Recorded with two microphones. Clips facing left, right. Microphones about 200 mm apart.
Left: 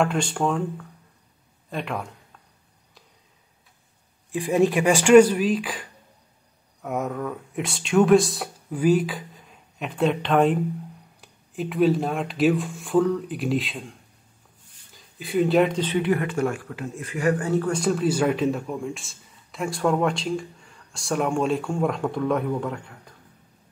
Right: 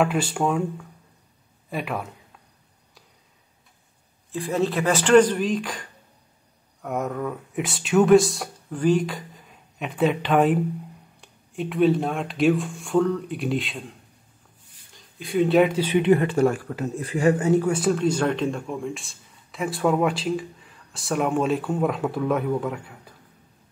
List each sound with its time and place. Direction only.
0.0 s speech: 5° right (ahead or behind)
4.3 s speech: 15° left (ahead or behind); by 16.0 s 10° right (ahead or behind)
16.0 s speech: 30° right (ahead or behind)
17.7 s speech: centre (ahead or behind)